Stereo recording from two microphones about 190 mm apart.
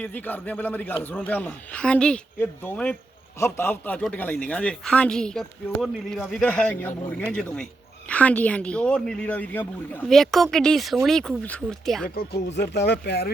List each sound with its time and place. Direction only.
0.0 s a man's voice: 10° left (ahead or behind)
12.1 s speech: 65° left (ahead or behind)